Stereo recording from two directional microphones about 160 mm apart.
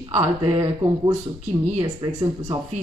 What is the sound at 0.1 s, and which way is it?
Speech, 15° right (ahead or behind).